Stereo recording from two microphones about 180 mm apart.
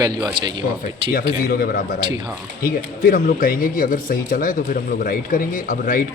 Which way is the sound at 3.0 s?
55° left (ahead or behind).